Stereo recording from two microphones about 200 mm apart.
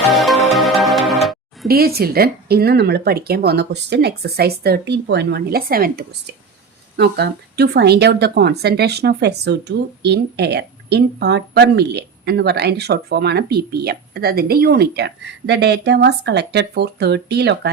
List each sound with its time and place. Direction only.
0.1 s music: centre (ahead or behind)
1.6 s speech: 50° right (ahead or behind)